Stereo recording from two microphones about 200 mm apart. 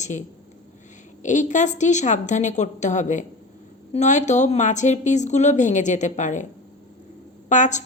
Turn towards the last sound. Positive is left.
turn(degrees=40)  # may be behind; listen again after turning